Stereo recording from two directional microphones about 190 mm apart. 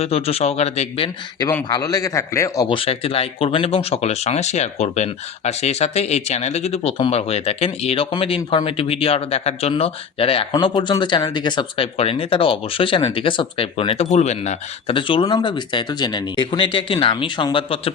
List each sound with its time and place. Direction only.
0.0 s a man's voice: 30° left (ahead or behind)
1.5 s a man's voice: 15° left (ahead or behind)